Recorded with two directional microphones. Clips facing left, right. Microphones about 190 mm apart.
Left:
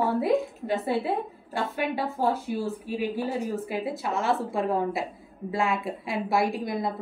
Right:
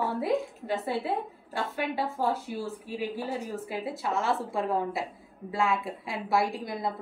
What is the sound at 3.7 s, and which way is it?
A woman's voice, 15° left (ahead or behind).